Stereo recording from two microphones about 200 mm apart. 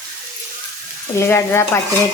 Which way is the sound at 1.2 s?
10° left (ahead or behind).